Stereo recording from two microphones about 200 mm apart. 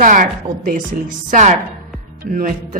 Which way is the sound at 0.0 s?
45° right (ahead or behind).